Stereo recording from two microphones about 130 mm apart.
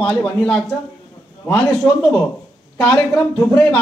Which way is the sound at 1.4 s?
15° left (ahead or behind).